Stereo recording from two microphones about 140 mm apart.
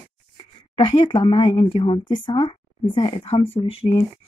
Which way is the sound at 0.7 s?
35° left (ahead or behind).